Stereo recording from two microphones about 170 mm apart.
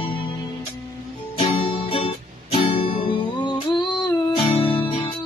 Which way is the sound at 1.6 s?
30° left (ahead or behind).